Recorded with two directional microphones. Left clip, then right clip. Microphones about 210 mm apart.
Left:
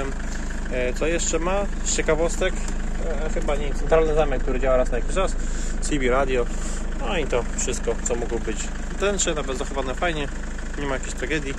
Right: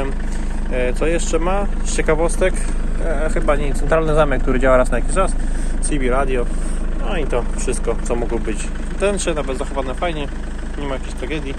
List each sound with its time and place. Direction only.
0.7 s speech: 5° left (ahead or behind)
3.4 s speech: 15° right (ahead or behind)
4.9 s speech: centre (ahead or behind)
5.9 s speech: 20° left (ahead or behind)
7.6 s speech: centre (ahead or behind)
9.8 s speech: 25° left (ahead or behind)